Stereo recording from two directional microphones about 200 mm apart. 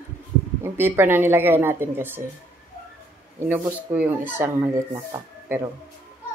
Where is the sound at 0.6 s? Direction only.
10° right (ahead or behind).